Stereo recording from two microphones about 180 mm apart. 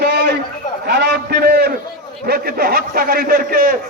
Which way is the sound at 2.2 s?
55° right (ahead or behind).